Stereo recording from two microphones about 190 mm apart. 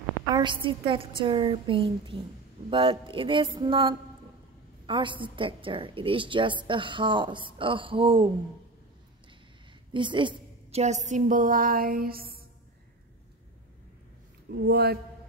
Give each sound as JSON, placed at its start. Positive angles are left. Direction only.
{"t": 0.3, "sound": "a woman's voice", "side_deg": -25}
{"t": 9.9, "sound": "a woman's voice", "side_deg": -25}
{"t": 14.5, "sound": "speech", "side_deg": -60}